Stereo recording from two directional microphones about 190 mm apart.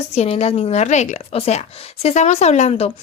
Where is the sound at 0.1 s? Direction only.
35° left (ahead or behind).